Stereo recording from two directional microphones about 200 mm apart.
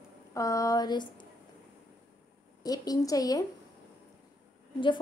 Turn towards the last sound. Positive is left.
turn(degrees=25)  # may be behind; listen again after turning